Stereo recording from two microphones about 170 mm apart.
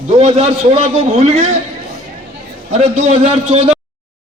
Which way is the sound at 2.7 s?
35° right (ahead or behind).